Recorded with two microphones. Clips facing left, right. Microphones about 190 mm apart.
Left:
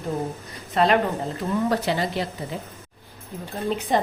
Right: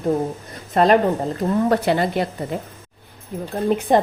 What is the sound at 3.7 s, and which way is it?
Speech, 55° right (ahead or behind).